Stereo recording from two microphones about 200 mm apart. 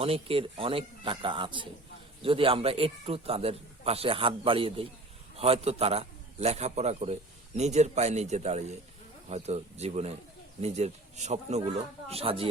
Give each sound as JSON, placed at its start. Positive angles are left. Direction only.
{"t": 0.0, "sound": "a man's voice", "side_deg": -30}